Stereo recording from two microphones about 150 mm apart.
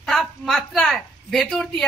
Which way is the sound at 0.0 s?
5° left (ahead or behind).